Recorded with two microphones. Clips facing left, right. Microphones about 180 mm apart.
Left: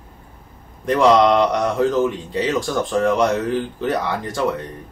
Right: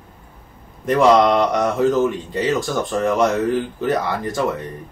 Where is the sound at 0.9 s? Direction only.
Centre (ahead or behind).